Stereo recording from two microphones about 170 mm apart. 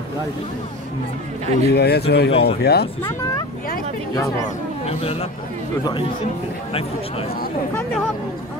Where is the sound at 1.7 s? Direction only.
70° left (ahead or behind).